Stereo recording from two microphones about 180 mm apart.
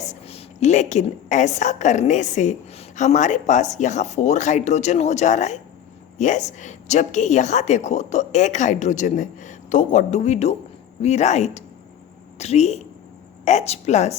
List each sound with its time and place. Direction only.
0.0 s a woman's voice: 35° left (ahead or behind)